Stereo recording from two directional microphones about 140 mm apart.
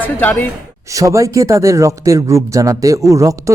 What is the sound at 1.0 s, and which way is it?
Speech, 20° right (ahead or behind).